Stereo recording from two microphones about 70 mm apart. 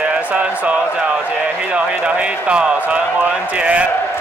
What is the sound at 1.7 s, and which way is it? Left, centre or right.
Speech, centre.